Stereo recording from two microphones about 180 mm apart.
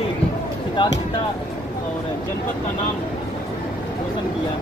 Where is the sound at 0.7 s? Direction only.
25° left (ahead or behind).